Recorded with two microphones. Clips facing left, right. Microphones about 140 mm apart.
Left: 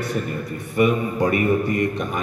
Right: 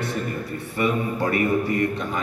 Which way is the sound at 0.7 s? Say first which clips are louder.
Left 4 dB; 15° left (ahead or behind).